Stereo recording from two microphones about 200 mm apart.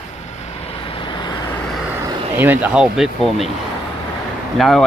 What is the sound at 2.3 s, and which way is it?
Speech, 10° right (ahead or behind).